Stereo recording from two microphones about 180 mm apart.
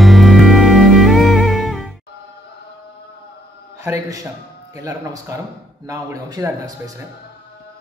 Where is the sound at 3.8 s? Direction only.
20° right (ahead or behind).